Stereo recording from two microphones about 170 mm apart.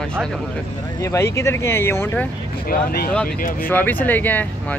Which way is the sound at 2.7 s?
65° left (ahead or behind).